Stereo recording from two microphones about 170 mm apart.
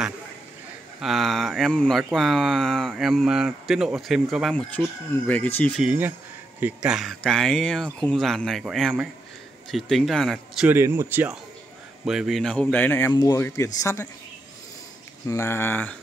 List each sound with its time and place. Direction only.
1.0 s speech: centre (ahead or behind)
5.8 s speech: 10° right (ahead or behind)
10.7 s speech: 15° right (ahead or behind); by 13.1 s 10° left (ahead or behind)
13.1 s speech: 20° left (ahead or behind)
15.2 s speech: 15° left (ahead or behind)